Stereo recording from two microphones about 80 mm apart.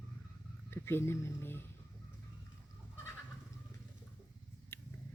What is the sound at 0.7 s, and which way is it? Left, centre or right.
Speech, left.